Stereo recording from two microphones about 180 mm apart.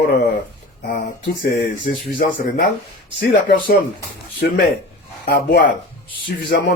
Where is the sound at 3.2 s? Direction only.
55° left (ahead or behind).